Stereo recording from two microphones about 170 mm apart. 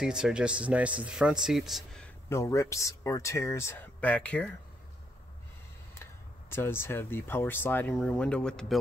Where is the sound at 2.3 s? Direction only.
15° left (ahead or behind).